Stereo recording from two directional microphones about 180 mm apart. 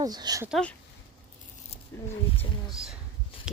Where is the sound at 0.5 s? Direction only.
5° left (ahead or behind).